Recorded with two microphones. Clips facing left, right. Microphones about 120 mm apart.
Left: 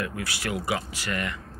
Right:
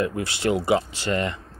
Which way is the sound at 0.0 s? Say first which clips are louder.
Right 7 dB; 25° right (ahead or behind).